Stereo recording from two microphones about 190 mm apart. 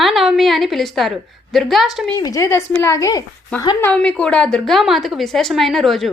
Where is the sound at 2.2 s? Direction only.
15° left (ahead or behind).